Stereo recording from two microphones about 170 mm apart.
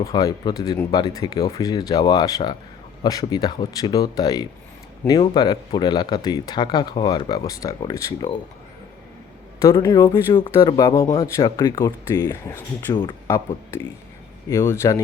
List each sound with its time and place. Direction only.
0.0 s speech: 20° left (ahead or behind)
9.6 s speech: 20° left (ahead or behind)
14.5 s speech: 15° left (ahead or behind)